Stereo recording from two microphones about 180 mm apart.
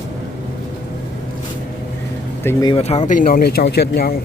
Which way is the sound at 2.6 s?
35° left (ahead or behind).